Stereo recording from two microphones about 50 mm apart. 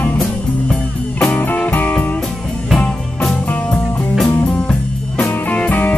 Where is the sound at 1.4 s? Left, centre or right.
Left.